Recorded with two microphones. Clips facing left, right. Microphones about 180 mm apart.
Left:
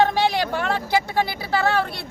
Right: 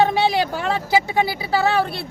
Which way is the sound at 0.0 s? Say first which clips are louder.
Right 2 dB; 5° right (ahead or behind).